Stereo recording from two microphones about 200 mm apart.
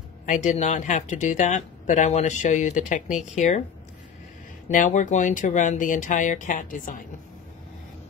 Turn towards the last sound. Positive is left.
turn(degrees=40)  # may be behind; listen again after turning